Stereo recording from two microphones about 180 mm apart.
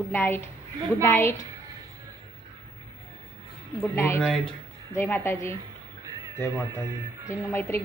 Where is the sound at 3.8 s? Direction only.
15° left (ahead or behind).